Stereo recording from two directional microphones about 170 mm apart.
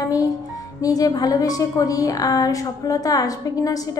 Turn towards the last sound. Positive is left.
turn(degrees=20)  # may be behind; listen again after turning